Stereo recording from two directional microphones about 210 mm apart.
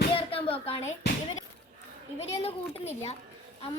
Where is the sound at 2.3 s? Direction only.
30° left (ahead or behind).